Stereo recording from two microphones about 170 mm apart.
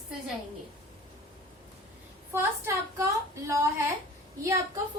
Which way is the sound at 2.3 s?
15° right (ahead or behind).